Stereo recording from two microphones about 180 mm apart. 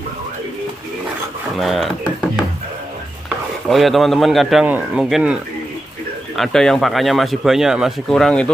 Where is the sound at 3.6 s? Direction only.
Centre (ahead or behind).